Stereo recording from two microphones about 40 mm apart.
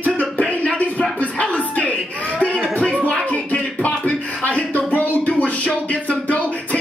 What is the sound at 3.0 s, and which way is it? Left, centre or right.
Music, left.